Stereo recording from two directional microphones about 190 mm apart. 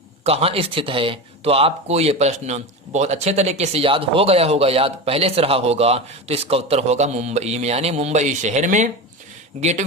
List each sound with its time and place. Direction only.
0.3 s speech: 30° right (ahead or behind)